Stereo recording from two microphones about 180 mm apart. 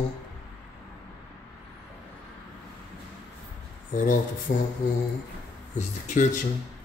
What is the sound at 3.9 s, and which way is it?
Speech, 45° left (ahead or behind).